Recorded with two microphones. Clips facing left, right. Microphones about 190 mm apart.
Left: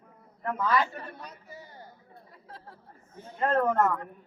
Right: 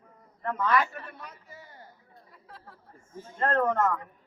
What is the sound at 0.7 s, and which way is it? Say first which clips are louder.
Speech: right 1 dB; 30° left (ahead or behind).